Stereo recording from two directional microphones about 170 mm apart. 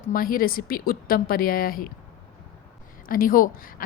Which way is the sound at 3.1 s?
55° left (ahead or behind).